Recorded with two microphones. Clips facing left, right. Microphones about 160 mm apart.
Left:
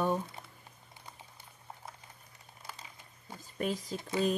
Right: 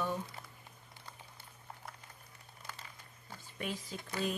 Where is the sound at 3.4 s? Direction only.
40° left (ahead or behind).